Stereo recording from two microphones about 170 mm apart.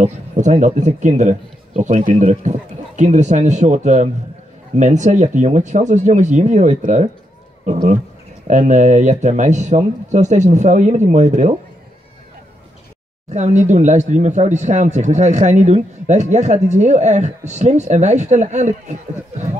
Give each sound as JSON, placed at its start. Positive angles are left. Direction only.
{"t": 0.0, "sound": "speech", "side_deg": -45}
{"t": 13.3, "sound": "speech", "side_deg": -45}